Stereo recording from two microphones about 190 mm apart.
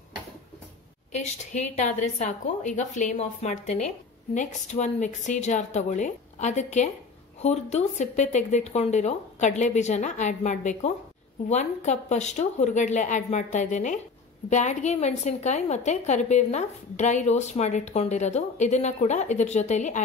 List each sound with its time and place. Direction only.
1.1 s a woman's voice: 35° left (ahead or behind)